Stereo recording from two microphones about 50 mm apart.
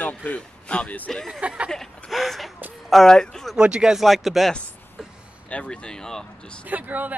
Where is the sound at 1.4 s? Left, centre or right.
Right.